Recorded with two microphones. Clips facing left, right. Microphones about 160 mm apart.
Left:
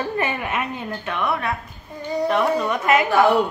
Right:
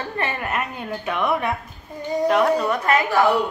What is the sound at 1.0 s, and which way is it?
Speech, 10° right (ahead or behind).